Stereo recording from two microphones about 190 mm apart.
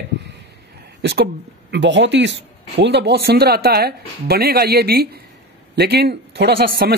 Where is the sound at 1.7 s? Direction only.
70° right (ahead or behind); by 6.9 s 55° right (ahead or behind).